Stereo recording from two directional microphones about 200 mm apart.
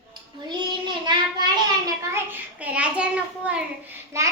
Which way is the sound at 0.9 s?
20° right (ahead or behind).